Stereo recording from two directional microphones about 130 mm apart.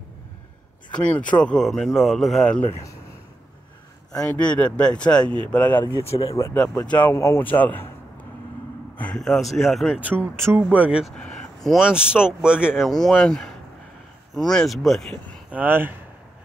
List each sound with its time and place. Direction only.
0.9 s speech: 10° left (ahead or behind)
4.1 s speech: 5° left (ahead or behind)
5.9 s speech: 45° left (ahead or behind)
6.2 s speech: 25° left (ahead or behind)
6.5 s speech: 5° left (ahead or behind)
8.9 s speech: 10° left (ahead or behind)
9.9 s speech: 15° right (ahead or behind)
11.1 s speech: 5° left (ahead or behind)
15.5 s speech: 15° right (ahead or behind)